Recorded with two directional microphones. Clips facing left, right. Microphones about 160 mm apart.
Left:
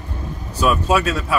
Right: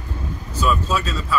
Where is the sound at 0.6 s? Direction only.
70° left (ahead or behind).